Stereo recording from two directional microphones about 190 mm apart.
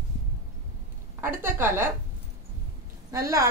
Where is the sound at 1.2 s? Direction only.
10° right (ahead or behind).